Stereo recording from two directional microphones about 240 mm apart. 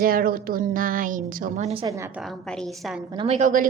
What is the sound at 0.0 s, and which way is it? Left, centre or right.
A woman's voice, right.